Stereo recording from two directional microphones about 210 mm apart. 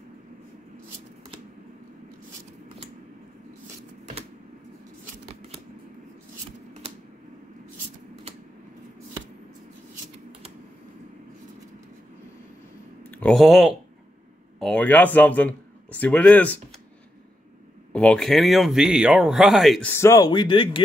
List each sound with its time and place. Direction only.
5.2 s scissors: 30° right (ahead or behind)
13.1 s speech: 5° left (ahead or behind)
17.9 s speech: 5° left (ahead or behind); by 20.8 s 25° left (ahead or behind)